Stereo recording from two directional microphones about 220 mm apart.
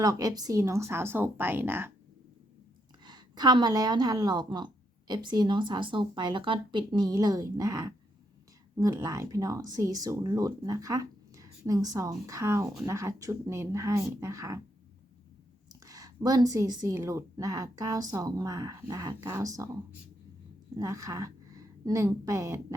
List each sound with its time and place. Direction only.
0.0 s a woman's voice: 15° right (ahead or behind)
3.0 s a woman's voice: 20° right (ahead or behind)
15.7 s a woman's voice: 15° right (ahead or behind)